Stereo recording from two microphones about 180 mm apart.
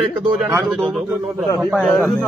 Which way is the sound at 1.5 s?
Centre (ahead or behind).